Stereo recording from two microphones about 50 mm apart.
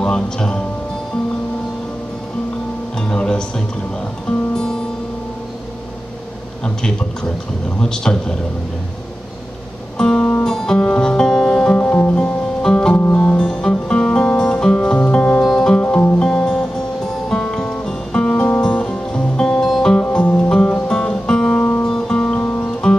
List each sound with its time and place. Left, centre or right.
0.0 s speech: centre
3.0 s music: centre
6.6 s a man's voice: centre
9.9 s music: centre
11.8 s music: left
15.4 s music: centre
15.7 s music: left
16.2 s music: centre